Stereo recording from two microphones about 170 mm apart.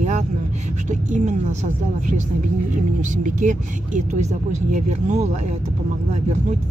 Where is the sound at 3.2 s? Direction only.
45° right (ahead or behind).